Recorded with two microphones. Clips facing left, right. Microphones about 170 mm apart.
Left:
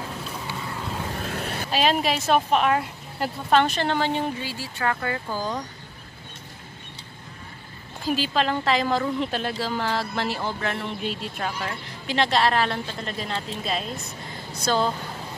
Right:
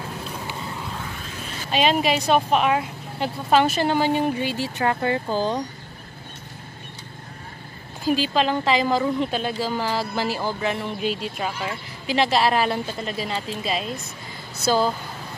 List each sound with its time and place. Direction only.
1.2 s vehicle: 60° left (ahead or behind)
1.7 s a woman's voice: centre (ahead or behind)
4.5 s speech: 20° right (ahead or behind)
8.0 s a woman's voice: centre (ahead or behind)